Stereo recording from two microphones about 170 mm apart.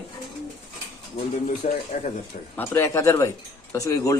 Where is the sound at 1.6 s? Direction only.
60° left (ahead or behind).